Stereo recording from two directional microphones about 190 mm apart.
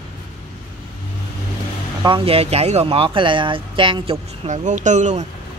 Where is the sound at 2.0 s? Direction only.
30° right (ahead or behind).